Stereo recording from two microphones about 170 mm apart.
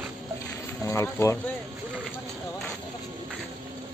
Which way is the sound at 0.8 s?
15° left (ahead or behind).